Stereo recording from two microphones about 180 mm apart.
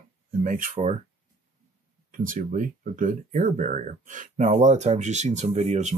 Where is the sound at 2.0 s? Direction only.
50° right (ahead or behind).